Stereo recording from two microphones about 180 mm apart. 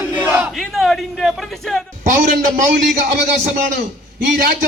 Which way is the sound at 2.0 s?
50° right (ahead or behind).